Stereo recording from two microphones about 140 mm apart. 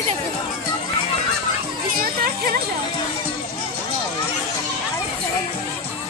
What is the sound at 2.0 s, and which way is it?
Music, 90° right.